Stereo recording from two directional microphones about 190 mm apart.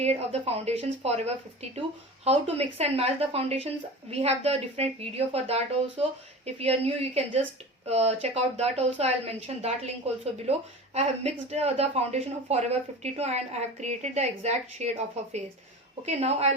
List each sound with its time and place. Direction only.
0.0 s speech: 35° right (ahead or behind)
2.6 s speech: 35° right (ahead or behind)
10.9 s speech: 35° right (ahead or behind)